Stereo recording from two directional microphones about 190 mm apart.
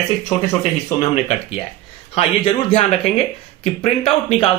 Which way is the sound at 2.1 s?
35° left (ahead or behind).